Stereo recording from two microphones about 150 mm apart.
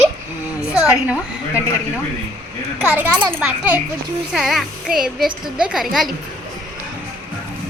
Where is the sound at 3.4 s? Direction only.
10° right (ahead or behind).